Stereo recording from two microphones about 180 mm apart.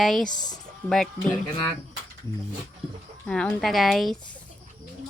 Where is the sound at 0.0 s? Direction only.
Centre (ahead or behind).